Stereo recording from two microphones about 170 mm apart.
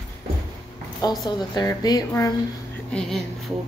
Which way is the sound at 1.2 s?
25° left (ahead or behind).